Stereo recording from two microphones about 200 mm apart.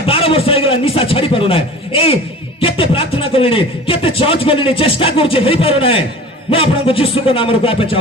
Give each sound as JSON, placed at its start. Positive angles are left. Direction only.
{"t": 0.0, "sound": "speech", "side_deg": 30}